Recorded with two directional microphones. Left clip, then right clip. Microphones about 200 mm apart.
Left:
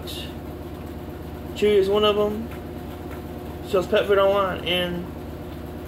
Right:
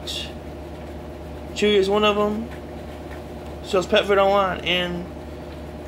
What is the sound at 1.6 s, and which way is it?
Speech, 15° right (ahead or behind).